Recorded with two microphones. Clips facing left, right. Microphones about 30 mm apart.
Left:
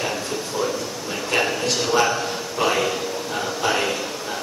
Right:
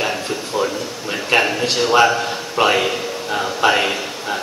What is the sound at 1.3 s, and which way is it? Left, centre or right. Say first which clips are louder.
A man's voice: right 5 dB; right.